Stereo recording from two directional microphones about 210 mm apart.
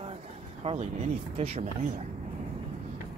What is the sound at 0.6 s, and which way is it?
Speech, 30° right (ahead or behind).